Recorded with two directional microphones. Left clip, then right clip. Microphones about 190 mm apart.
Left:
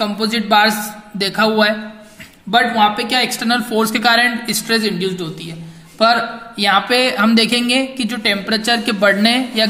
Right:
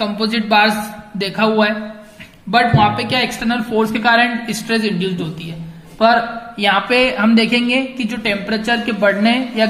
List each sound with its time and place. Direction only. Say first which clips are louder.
0.0 s a woman's voice: even; 35° left (ahead or behind)
6.6 s a woman's voice: even; 35° left (ahead or behind)